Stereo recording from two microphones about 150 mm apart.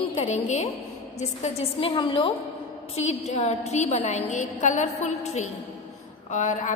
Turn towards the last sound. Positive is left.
turn(degrees=55)  # may be behind; listen again after turning